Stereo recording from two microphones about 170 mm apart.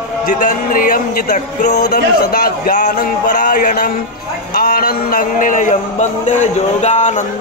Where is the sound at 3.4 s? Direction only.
50° left (ahead or behind).